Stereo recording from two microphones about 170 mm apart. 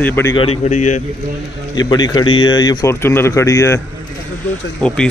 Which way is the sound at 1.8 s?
25° left (ahead or behind).